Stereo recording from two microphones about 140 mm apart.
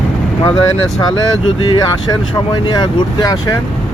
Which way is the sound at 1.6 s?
30° left (ahead or behind).